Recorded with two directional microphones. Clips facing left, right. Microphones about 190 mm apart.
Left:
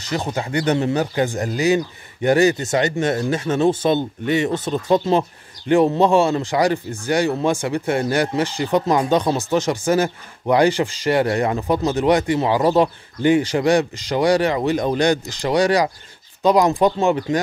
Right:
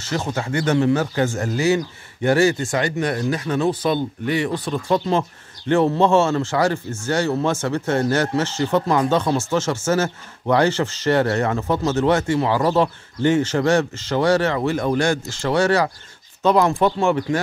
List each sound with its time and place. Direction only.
0.0 s speech: 15° left (ahead or behind)